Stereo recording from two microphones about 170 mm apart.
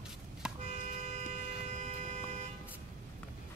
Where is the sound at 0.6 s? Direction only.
45° right (ahead or behind).